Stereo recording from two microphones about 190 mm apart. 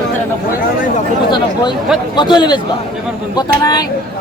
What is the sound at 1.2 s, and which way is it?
A man's voice, 25° left (ahead or behind).